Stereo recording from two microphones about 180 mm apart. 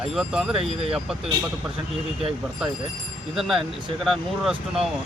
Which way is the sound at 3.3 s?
Centre (ahead or behind).